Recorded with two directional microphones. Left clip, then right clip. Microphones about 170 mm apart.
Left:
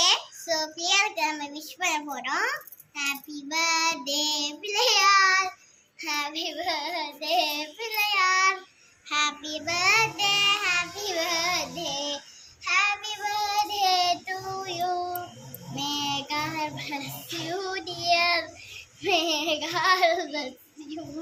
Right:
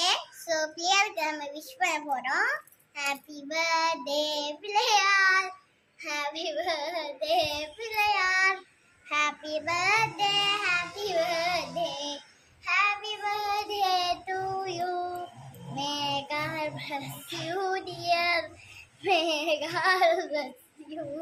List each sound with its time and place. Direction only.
0.0 s child singing: 20° right (ahead or behind)